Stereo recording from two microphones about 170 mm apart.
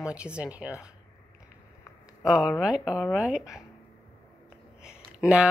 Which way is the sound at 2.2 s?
Centre (ahead or behind).